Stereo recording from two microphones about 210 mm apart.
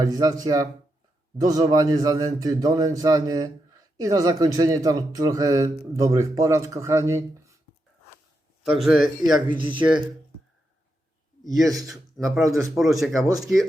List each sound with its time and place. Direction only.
0.0 s speech: 15° right (ahead or behind)
8.7 s a man's voice: centre (ahead or behind)
11.4 s a man's voice: centre (ahead or behind)